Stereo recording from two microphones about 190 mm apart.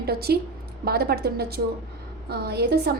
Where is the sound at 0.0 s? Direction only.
55° right (ahead or behind).